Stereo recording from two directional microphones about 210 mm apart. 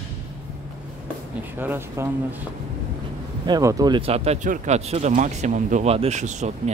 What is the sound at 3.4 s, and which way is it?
Speech, 15° right (ahead or behind).